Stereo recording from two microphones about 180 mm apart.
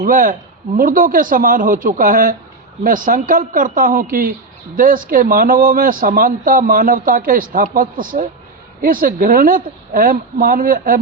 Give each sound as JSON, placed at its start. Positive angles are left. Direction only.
{"t": 0.0, "sound": "speech", "side_deg": -50}